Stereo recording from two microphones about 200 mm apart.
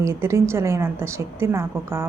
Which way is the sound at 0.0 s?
15° right (ahead or behind).